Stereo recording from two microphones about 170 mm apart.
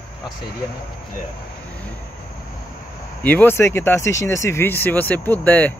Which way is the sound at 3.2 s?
10° left (ahead or behind).